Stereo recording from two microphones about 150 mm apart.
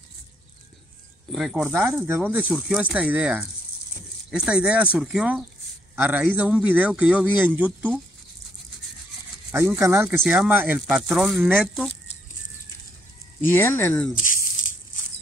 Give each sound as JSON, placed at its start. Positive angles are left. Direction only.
{"t": 1.3, "sound": "speech", "side_deg": 0}
{"t": 1.8, "sound": "speech", "side_deg": -15}
{"t": 9.5, "sound": "speech", "side_deg": -15}
{"t": 13.4, "sound": "speech", "side_deg": 15}
{"t": 14.1, "sound": "speech", "side_deg": 65}